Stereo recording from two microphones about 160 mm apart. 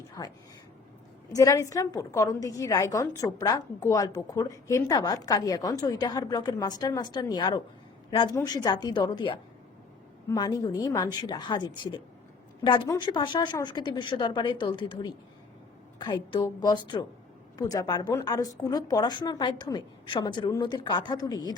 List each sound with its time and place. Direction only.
0.2 s a woman's voice: 20° left (ahead or behind)
13.0 s a woman's voice: 30° left (ahead or behind)